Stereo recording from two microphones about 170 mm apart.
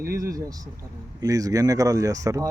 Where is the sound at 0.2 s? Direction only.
20° right (ahead or behind).